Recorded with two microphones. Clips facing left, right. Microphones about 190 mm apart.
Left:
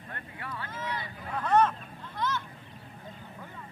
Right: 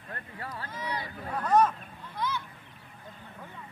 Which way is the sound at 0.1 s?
40° right (ahead or behind).